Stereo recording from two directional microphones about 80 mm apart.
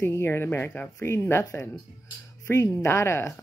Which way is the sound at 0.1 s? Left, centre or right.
Left.